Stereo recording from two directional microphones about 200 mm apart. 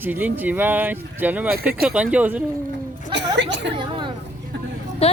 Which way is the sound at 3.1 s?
60° right (ahead or behind).